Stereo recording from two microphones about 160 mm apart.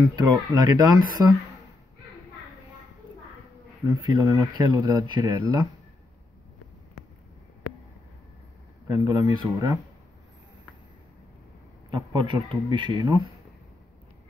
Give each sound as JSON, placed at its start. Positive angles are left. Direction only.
{"t": 0.1, "sound": "speech", "side_deg": -25}
{"t": 3.8, "sound": "speech", "side_deg": -25}
{"t": 8.8, "sound": "speech", "side_deg": -25}
{"t": 11.9, "sound": "speech", "side_deg": -30}